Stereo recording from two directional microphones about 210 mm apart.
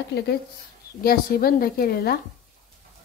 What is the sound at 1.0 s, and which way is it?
Speech, 45° left (ahead or behind).